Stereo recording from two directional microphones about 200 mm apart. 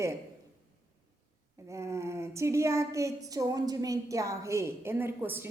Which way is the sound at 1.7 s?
15° right (ahead or behind).